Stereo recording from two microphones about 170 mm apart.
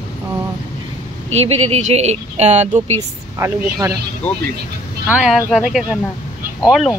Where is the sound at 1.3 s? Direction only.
40° right (ahead or behind).